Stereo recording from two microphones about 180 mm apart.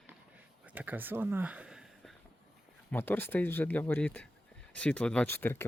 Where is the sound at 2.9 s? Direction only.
10° left (ahead or behind).